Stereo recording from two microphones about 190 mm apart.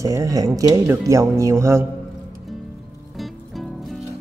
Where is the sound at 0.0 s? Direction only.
15° right (ahead or behind).